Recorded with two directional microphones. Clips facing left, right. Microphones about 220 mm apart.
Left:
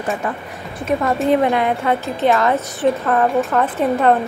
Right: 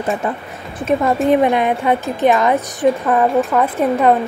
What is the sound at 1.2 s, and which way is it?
Speech, 20° right (ahead or behind).